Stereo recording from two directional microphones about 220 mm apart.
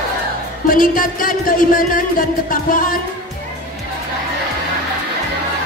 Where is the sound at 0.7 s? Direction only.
40° left (ahead or behind).